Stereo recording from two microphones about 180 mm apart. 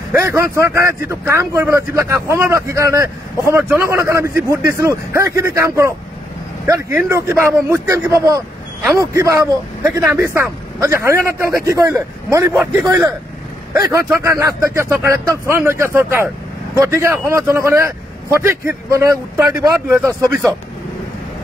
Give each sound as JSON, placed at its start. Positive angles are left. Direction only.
{"t": 0.1, "sound": "speech", "side_deg": -15}
{"t": 13.7, "sound": "speech", "side_deg": -15}